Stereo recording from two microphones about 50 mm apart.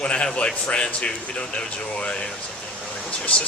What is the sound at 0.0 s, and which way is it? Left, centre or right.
A man's voice, left.